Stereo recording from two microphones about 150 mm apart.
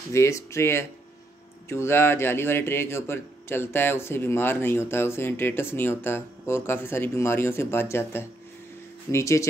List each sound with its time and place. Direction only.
0.1 s speech: 20° left (ahead or behind)